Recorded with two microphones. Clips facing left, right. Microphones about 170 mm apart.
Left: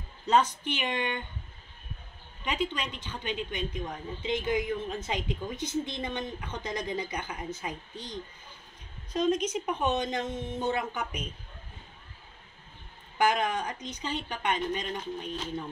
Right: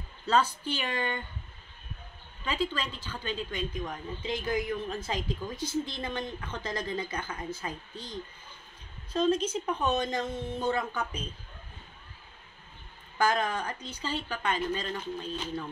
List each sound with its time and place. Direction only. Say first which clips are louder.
0.3 s a woman's voice: left 2 dB; 20° left (ahead or behind)
2.4 s a woman's voice: even; 15° left (ahead or behind)
9.1 s a woman's voice: even; 15° left (ahead or behind)
13.2 s a woman's voice: left 1 dB; 20° left (ahead or behind)